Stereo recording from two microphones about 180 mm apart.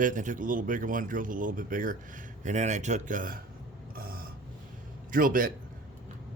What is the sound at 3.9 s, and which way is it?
Gasp, 55° right (ahead or behind).